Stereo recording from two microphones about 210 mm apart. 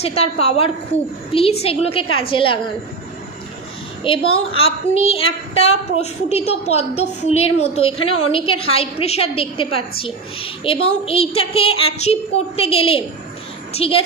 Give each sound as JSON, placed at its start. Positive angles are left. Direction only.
{"t": 0.0, "sound": "a woman's voice", "side_deg": 30}
{"t": 4.0, "sound": "a woman's voice", "side_deg": 25}